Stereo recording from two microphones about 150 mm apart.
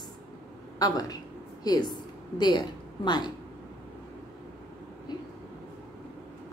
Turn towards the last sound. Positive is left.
turn(degrees=30)  # may be behind; listen again after turning